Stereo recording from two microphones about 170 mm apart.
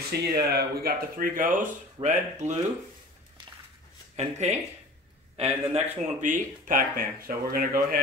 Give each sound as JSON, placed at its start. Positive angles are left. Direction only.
{"t": 0.1, "sound": "speech", "side_deg": -70}
{"t": 4.2, "sound": "speech", "side_deg": -40}